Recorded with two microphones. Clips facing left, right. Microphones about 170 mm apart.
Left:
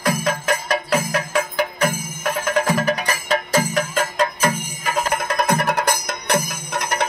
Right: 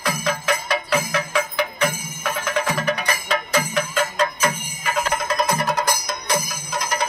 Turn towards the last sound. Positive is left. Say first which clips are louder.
# left 2 dB
turn(degrees=65)  # may be behind; listen again after turning